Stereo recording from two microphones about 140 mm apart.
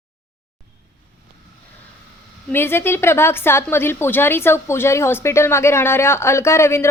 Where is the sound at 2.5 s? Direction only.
15° left (ahead or behind).